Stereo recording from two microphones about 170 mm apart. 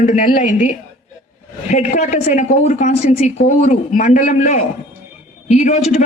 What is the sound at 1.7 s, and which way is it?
Speech, 45° left (ahead or behind).